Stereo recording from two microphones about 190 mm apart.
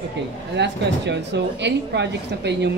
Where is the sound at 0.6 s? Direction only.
65° right (ahead or behind).